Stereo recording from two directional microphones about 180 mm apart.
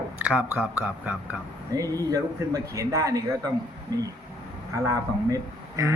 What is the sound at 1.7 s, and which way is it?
A man's voice, 20° right (ahead or behind).